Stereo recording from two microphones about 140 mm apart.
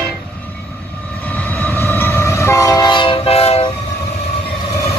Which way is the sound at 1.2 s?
10° left (ahead or behind).